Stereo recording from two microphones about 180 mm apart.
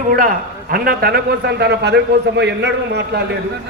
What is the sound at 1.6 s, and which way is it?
A man's voice, 70° right (ahead or behind).